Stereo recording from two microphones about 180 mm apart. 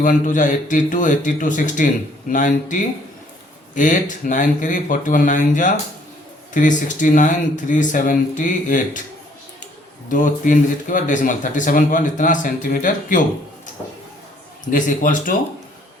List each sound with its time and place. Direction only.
0.0 s speech: 50° left (ahead or behind)
10.1 s speech: 45° left (ahead or behind)
14.7 s speech: 45° left (ahead or behind)